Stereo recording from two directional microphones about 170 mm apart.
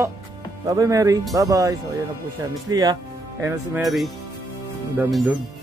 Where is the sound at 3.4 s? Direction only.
5° right (ahead or behind).